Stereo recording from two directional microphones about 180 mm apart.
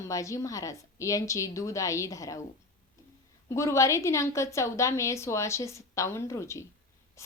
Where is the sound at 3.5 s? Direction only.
15° left (ahead or behind).